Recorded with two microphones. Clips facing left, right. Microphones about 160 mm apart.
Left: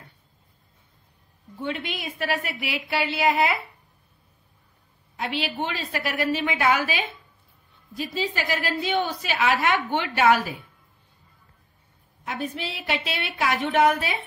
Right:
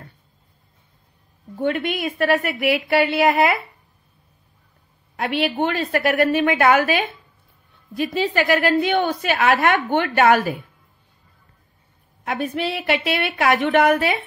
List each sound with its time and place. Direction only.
1.6 s a woman's voice: 55° right (ahead or behind)
5.1 s a woman's voice: 60° right (ahead or behind)
12.3 s a woman's voice: 65° right (ahead or behind)